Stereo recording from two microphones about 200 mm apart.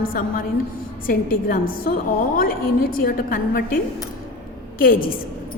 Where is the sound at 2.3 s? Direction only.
45° left (ahead or behind).